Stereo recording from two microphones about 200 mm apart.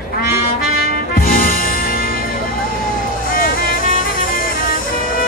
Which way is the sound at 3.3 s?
45° left (ahead or behind).